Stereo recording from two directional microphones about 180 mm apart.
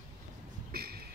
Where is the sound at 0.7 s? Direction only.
60° right (ahead or behind).